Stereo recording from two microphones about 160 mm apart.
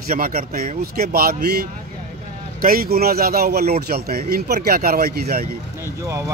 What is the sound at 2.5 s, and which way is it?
Speech, 65° right (ahead or behind).